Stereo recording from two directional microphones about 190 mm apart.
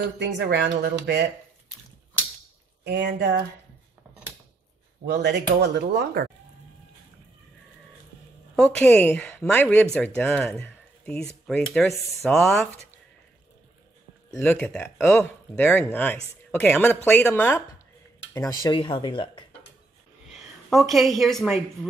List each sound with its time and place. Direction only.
0.2 s speech: 60° right (ahead or behind)
2.8 s speech: 65° right (ahead or behind)
5.1 s speech: 60° right (ahead or behind)
8.5 s speech: 5° left (ahead or behind)
14.3 s speech: 5° left (ahead or behind); by 19.4 s 25° left (ahead or behind)
20.7 s speech: centre (ahead or behind)